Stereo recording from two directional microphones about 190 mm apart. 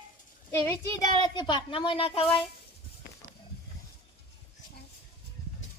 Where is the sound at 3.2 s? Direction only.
15° right (ahead or behind).